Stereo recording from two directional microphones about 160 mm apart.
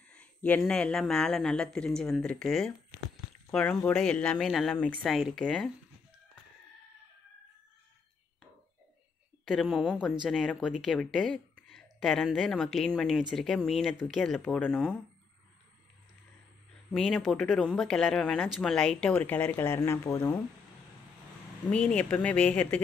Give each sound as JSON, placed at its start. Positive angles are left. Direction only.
{"t": 0.1, "sound": "speech", "side_deg": 10}
{"t": 9.4, "sound": "speech", "side_deg": 0}
{"t": 16.9, "sound": "speech", "side_deg": 5}
{"t": 21.6, "sound": "speech", "side_deg": 5}